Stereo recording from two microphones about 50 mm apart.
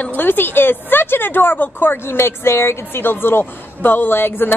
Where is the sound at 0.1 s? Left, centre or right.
Left.